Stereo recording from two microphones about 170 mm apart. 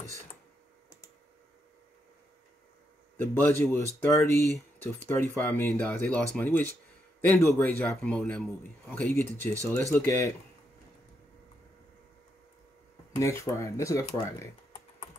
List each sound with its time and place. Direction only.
3.2 s speech: 10° left (ahead or behind)
13.1 s speech: 15° left (ahead or behind)